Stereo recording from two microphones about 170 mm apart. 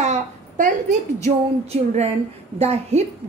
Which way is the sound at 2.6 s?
40° right (ahead or behind).